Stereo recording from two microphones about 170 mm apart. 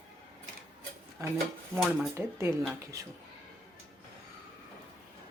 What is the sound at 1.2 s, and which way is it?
Speech, 20° right (ahead or behind).